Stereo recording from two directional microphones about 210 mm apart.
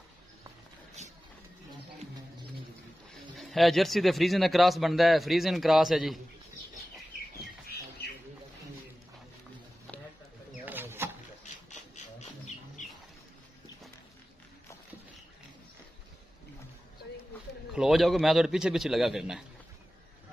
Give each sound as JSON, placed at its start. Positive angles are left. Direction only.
{"t": 3.3, "sound": "a man's voice", "side_deg": 0}
{"t": 10.6, "sound": "wild animals", "side_deg": -10}
{"t": 11.7, "sound": "a sound", "side_deg": 35}
{"t": 17.7, "sound": "a man's voice", "side_deg": 0}